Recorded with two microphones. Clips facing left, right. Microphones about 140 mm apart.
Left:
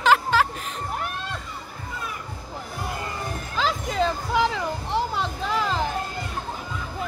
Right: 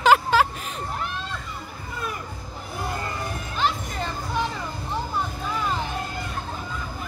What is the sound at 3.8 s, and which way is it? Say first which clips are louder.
Music: left 6 dB; 90° left.